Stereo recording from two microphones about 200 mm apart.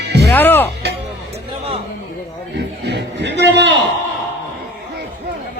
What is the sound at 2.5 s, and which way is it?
A man's voice, 55° right (ahead or behind).